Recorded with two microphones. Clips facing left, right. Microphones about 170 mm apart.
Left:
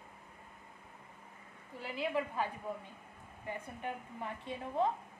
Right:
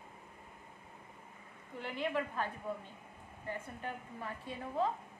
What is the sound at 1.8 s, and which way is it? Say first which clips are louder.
Speech: left 1 dB; 5° left (ahead or behind).